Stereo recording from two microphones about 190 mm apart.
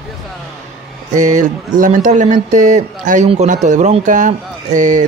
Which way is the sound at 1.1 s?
40° right (ahead or behind).